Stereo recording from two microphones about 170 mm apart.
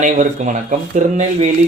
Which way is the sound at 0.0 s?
50° right (ahead or behind).